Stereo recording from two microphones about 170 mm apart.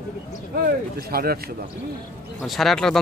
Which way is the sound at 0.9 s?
65° right (ahead or behind).